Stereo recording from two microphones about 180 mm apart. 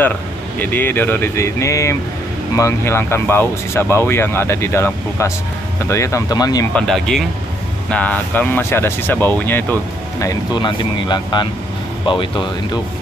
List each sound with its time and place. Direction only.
0.6 s speech: 10° left (ahead or behind)
6.7 s speech: centre (ahead or behind)
10.2 s speech: 25° left (ahead or behind)